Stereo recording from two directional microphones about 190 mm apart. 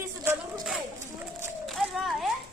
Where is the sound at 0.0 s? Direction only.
20° right (ahead or behind).